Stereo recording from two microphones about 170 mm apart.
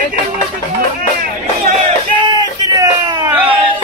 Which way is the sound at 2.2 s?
20° right (ahead or behind).